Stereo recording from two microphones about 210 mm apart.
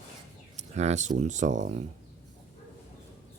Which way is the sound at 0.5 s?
35° right (ahead or behind).